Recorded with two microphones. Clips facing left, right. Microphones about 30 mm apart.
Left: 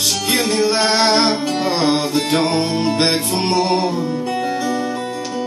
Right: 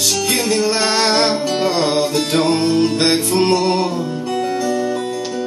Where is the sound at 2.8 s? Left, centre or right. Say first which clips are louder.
Right 2 dB; left.